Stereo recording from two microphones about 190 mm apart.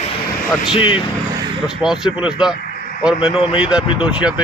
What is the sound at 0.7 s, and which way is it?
Speech, 30° left (ahead or behind).